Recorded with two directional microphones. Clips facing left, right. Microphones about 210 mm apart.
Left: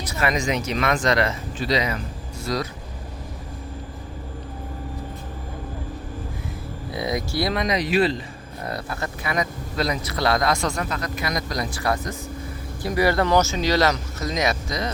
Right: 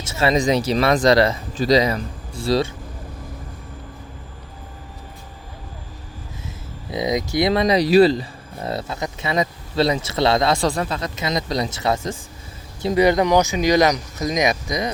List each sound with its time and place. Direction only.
0.1 s speech: 30° right (ahead or behind)
6.9 s speech: 20° right (ahead or behind)
7.6 s speech: 35° right (ahead or behind)
8.6 s speech: 25° right (ahead or behind)